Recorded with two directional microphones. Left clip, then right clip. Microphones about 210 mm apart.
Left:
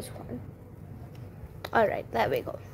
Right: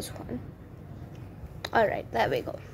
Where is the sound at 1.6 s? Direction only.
5° left (ahead or behind).